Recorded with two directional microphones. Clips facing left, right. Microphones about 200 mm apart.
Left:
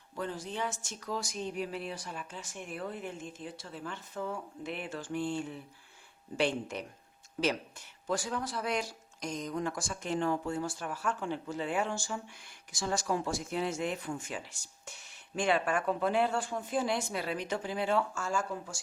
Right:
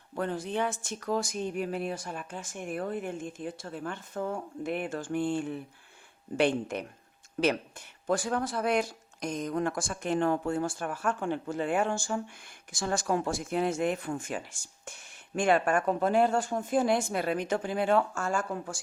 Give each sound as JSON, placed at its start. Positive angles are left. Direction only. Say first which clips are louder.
{"t": 0.2, "sound": "speech", "louder": "right 6 dB", "side_deg": -60}